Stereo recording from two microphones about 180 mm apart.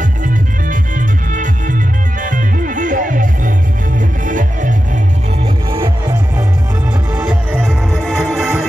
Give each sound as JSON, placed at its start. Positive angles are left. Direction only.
{"t": 0.2, "sound": "music", "side_deg": -45}
{"t": 5.7, "sound": "music", "side_deg": -25}
{"t": 7.2, "sound": "music", "side_deg": -5}